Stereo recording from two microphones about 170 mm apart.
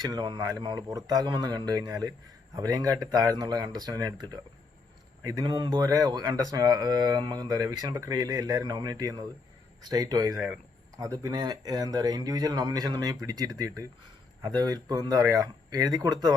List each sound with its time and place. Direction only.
0.0 s speech: 25° right (ahead or behind)
10.3 s speech: 5° right (ahead or behind)
10.9 s speech: 20° right (ahead or behind)